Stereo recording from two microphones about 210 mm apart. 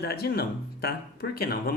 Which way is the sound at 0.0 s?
50° left (ahead or behind).